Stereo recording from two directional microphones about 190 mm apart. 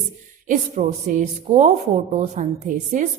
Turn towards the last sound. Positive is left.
turn(degrees=-40)  # may be behind; listen again after turning